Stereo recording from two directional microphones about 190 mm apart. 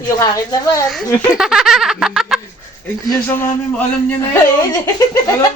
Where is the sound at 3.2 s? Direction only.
10° left (ahead or behind).